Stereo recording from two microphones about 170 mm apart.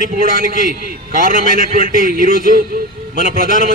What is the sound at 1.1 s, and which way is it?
Speech, 50° right (ahead or behind).